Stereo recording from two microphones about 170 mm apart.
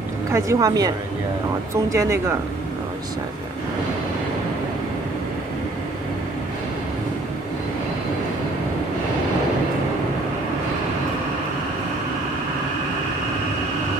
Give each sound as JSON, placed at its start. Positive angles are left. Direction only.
{"t": 0.3, "sound": "speech", "side_deg": -20}